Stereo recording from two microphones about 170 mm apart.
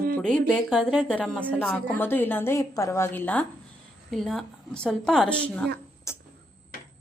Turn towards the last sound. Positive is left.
turn(degrees=15)  # may be behind; listen again after turning